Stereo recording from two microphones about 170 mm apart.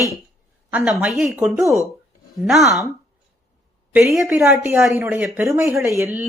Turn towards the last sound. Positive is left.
turn(degrees=-15)  # may be behind; listen again after turning